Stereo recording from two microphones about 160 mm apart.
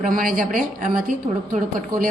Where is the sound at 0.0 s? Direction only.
60° right (ahead or behind).